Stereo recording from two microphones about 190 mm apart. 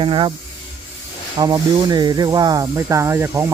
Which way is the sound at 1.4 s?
20° right (ahead or behind).